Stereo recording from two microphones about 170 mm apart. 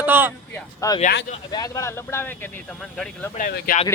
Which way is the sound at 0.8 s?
20° left (ahead or behind).